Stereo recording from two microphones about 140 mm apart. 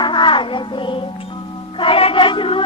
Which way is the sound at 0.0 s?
35° left (ahead or behind).